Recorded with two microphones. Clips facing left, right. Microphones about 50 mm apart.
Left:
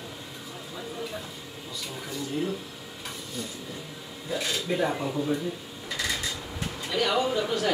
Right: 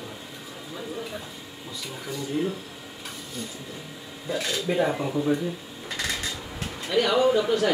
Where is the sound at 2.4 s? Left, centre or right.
Centre.